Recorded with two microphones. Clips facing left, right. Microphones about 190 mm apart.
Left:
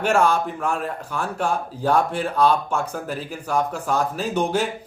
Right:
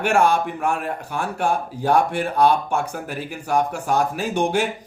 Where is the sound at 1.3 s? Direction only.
55° right (ahead or behind).